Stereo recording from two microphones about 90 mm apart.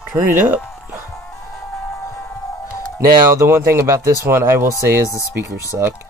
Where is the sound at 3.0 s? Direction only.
30° right (ahead or behind).